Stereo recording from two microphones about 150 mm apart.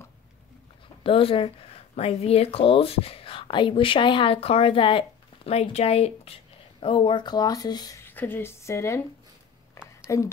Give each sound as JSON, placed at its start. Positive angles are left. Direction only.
{"t": 1.0, "sound": "speech", "side_deg": 35}
{"t": 8.0, "sound": "speech", "side_deg": 15}
{"t": 10.0, "sound": "speech", "side_deg": 20}